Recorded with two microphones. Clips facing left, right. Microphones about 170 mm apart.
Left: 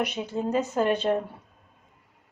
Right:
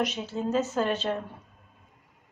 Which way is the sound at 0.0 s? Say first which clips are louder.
Left 1 dB; 15° left (ahead or behind).